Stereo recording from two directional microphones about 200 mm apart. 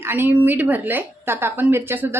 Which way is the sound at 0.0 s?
10° right (ahead or behind).